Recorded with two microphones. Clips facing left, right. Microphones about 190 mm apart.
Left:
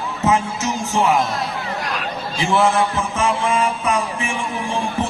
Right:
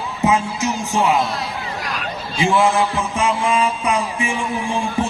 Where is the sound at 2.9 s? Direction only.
15° right (ahead or behind).